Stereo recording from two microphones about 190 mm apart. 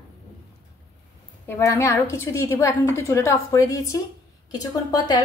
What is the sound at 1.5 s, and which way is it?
A woman's voice, 15° left (ahead or behind).